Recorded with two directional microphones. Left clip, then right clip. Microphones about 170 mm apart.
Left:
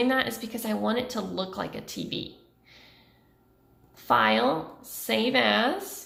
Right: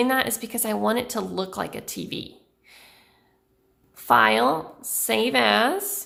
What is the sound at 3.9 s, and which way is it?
A woman's voice, 35° right (ahead or behind).